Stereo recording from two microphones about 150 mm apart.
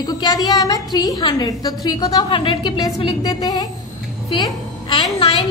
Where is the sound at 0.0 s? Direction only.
25° left (ahead or behind).